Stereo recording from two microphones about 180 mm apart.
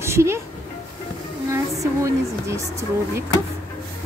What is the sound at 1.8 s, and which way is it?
Speech, 15° right (ahead or behind).